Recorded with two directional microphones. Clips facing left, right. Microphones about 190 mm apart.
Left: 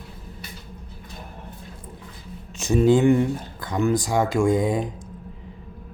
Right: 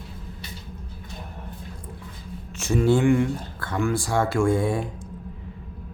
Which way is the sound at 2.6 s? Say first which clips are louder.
Left 3 dB; 15° left (ahead or behind).